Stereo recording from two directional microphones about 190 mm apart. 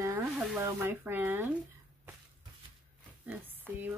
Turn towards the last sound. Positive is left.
turn(degrees=-10)  # may be behind; listen again after turning